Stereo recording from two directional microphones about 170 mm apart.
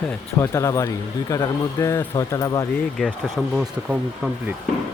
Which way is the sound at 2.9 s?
Centre (ahead or behind).